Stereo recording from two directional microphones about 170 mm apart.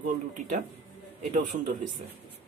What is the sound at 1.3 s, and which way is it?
Speech, 50° right (ahead or behind).